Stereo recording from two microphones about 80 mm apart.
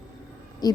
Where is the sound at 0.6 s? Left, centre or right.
Left.